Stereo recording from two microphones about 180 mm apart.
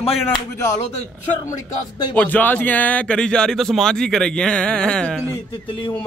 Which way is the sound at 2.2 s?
10° left (ahead or behind).